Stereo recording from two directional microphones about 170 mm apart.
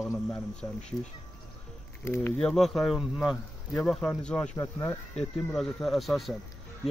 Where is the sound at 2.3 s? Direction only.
Centre (ahead or behind).